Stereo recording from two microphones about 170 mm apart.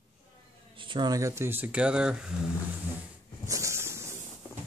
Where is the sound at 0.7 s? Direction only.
30° right (ahead or behind); by 2.3 s 5° right (ahead or behind).